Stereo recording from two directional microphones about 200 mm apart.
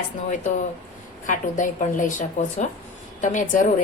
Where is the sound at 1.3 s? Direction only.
40° left (ahead or behind).